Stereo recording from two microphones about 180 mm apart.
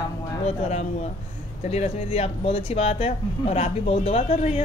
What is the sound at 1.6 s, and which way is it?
Speech, 35° left (ahead or behind).